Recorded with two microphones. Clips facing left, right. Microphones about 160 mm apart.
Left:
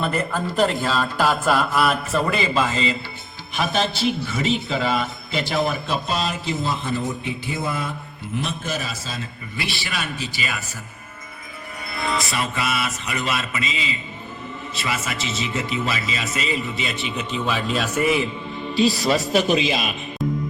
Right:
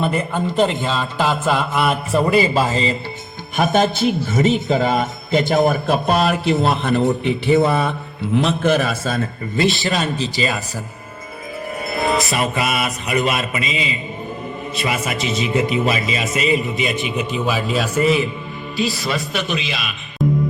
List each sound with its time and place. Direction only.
0.4 s speech: centre (ahead or behind)
2.1 s a man's voice: 35° right (ahead or behind); by 9.6 s 55° right (ahead or behind)
10.4 s speech: 35° right (ahead or behind)
11.9 s speech: 20° right (ahead or behind); by 18.0 s centre (ahead or behind)
18.9 s a man's voice: 35° left (ahead or behind)
20.2 s music: centre (ahead or behind)